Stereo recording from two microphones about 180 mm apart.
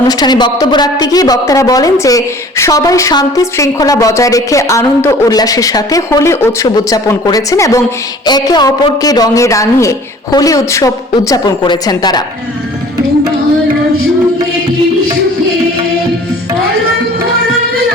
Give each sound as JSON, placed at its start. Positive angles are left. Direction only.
{"t": 0.1, "sound": "a woman's voice", "side_deg": 20}